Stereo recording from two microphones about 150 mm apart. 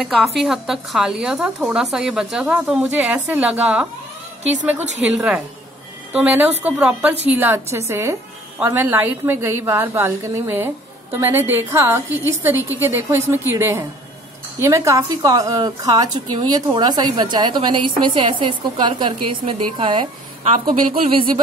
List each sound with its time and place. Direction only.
0.0 s a woman's voice: centre (ahead or behind)
4.7 s a woman's voice: 50° right (ahead or behind)
5.1 s a woman's voice: 5° right (ahead or behind); by 20.1 s 35° right (ahead or behind)
20.4 s a woman's voice: 65° right (ahead or behind)